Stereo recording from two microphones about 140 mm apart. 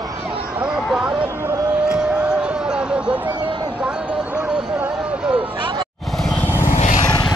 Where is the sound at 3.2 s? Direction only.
35° right (ahead or behind).